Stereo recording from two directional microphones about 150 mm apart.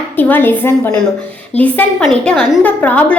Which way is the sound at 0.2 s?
15° left (ahead or behind).